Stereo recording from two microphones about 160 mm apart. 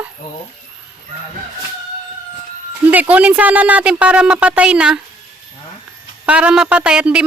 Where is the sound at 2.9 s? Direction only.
10° right (ahead or behind).